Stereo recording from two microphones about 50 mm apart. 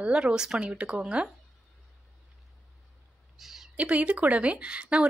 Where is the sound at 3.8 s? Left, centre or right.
Right.